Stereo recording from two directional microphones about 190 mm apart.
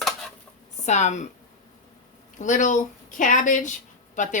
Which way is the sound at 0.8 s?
40° left (ahead or behind).